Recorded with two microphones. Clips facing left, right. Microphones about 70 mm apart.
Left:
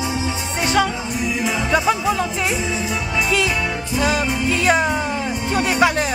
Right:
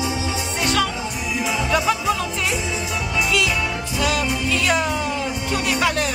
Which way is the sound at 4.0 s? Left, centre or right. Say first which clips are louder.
Left 2 dB; left.